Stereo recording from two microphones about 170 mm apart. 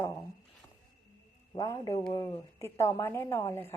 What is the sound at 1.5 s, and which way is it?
A woman's voice, 25° left (ahead or behind).